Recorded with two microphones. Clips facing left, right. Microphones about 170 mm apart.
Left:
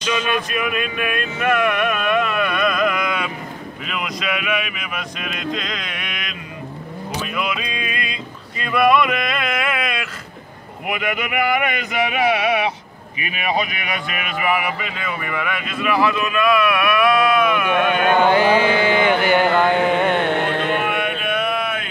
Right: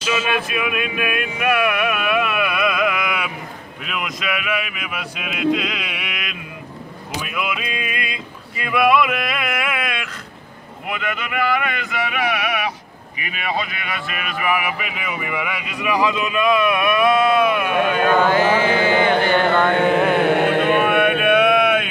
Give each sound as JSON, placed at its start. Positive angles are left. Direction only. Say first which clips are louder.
{"t": 0.0, "sound": "a sound", "louder": "even", "side_deg": -5}
{"t": 3.8, "sound": "speech", "louder": "even", "side_deg": 0}
{"t": 7.2, "sound": "a sound", "louder": "even", "side_deg": -5}
{"t": 10.9, "sound": "carnatic music", "louder": "left 3 dB", "side_deg": 15}
{"t": 13.2, "sound": "speech", "louder": "left 3 dB", "side_deg": 20}
{"t": 14.4, "sound": "speech", "louder": "left 1 dB", "side_deg": 0}
{"t": 18.2, "sound": "carnatic music", "louder": "left 1 dB", "side_deg": 15}
{"t": 20.4, "sound": "chant", "louder": "right 4 dB", "side_deg": -55}